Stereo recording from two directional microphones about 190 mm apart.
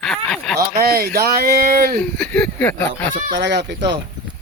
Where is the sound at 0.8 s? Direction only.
55° right (ahead or behind).